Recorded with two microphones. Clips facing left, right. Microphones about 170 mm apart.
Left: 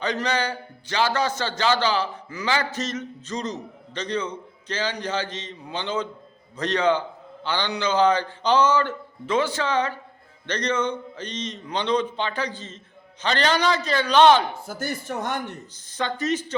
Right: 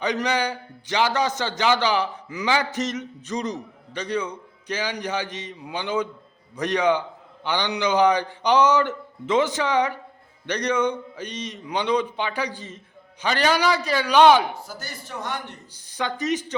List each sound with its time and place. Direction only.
0.0 s a man's voice: 15° right (ahead or behind)
14.7 s speech: 50° left (ahead or behind)
15.9 s a man's voice: 15° right (ahead or behind)